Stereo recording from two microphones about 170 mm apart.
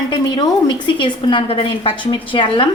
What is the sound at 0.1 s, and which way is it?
A woman's voice, 25° left (ahead or behind).